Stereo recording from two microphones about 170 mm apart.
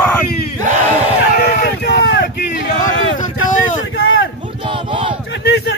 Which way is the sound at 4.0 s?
90° left.